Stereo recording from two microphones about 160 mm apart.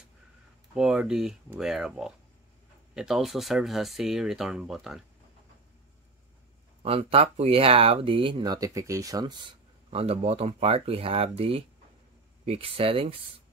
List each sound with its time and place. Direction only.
0.7 s speech: 5° right (ahead or behind)
6.8 s speech: 35° right (ahead or behind)
9.8 s speech: 40° right (ahead or behind)